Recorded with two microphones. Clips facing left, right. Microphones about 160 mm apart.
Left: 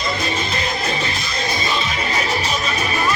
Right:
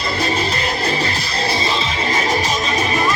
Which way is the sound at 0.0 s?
35° right (ahead or behind).